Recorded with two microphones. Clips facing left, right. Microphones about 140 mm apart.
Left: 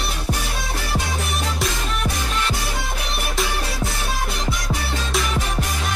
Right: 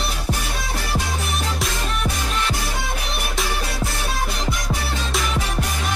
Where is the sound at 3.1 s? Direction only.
Centre (ahead or behind).